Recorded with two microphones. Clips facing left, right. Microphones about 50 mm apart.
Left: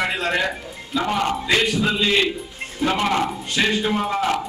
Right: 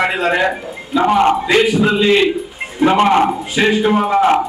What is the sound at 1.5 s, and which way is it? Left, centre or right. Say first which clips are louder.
Speech: right 7 dB; centre.